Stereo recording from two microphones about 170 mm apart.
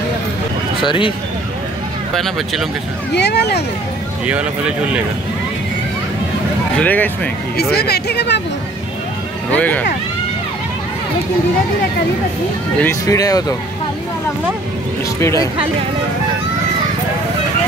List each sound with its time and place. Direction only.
0.8 s speech: 30° left (ahead or behind)
2.1 s speech: centre (ahead or behind)
3.2 s speech: 80° left
4.3 s speech: 5° right (ahead or behind)
6.8 s speech: 10° left (ahead or behind)
7.5 s speech: 70° left (ahead or behind)
9.6 s speech: 10° left (ahead or behind)
12.8 s speech: 20° left (ahead or behind)
15.1 s speech: 15° left (ahead or behind)